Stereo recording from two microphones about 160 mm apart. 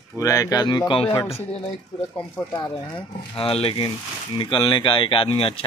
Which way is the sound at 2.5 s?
25° left (ahead or behind).